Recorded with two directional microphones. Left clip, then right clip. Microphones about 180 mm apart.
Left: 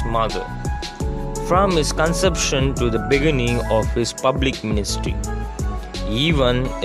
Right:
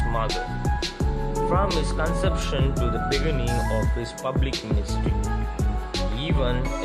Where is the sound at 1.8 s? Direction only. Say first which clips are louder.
Left 7 dB; 45° left (ahead or behind).